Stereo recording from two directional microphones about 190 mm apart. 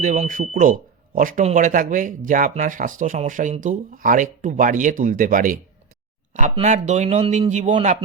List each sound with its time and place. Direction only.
0.0 s a man's voice: 40° right (ahead or behind)